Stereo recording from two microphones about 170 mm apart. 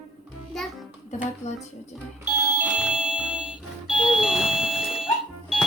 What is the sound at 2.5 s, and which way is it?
Doorbell, 10° right (ahead or behind).